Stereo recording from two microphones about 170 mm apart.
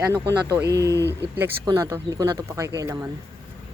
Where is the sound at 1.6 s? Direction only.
20° right (ahead or behind).